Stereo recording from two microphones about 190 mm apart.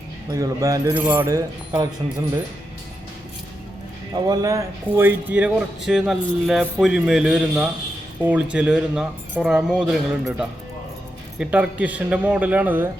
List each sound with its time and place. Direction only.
0.3 s speech: 20° right (ahead or behind)
4.1 s a man's voice: 20° right (ahead or behind)